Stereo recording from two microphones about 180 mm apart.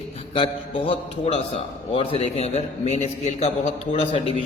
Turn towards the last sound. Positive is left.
turn(degrees=30)  # may be behind; listen again after turning